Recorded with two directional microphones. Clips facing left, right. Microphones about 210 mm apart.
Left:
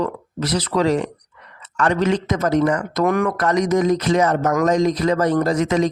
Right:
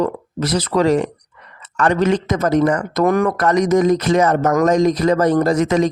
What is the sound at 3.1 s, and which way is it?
Speech, 35° right (ahead or behind).